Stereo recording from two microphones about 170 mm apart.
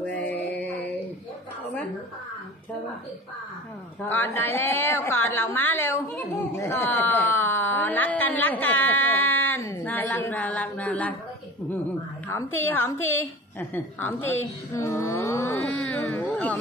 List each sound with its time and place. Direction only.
0.0 s music: 10° left (ahead or behind)
4.0 s a woman's voice: 10° left (ahead or behind)
12.3 s a woman's voice: 10° left (ahead or behind)